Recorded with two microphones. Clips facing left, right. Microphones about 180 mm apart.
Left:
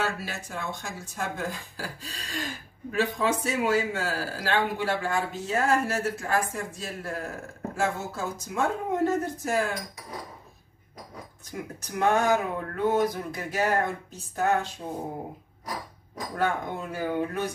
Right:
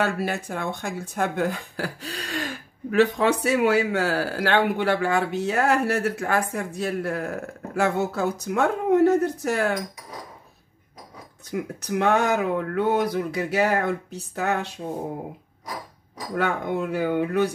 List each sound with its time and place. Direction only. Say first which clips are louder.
0.0 s speech: right 6 dB; 60° right (ahead or behind)
11.8 s speech: right 2 dB; 70° right (ahead or behind)
16.3 s speech: right 4 dB; 70° right (ahead or behind)